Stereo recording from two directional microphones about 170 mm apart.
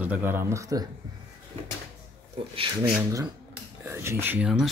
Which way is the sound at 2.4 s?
35° right (ahead or behind).